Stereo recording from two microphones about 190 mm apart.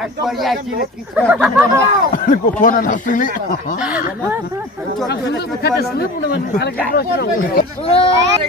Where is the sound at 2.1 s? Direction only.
45° left (ahead or behind).